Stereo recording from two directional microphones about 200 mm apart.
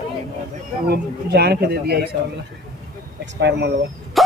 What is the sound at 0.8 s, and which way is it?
A man's voice, 50° right (ahead or behind).